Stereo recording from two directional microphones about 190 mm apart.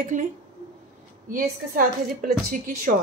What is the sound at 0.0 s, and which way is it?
Speech, 40° right (ahead or behind).